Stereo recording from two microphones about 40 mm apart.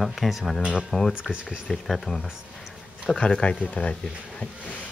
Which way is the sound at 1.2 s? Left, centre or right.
Right.